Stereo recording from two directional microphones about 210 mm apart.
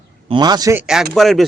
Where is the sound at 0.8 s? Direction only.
Centre (ahead or behind).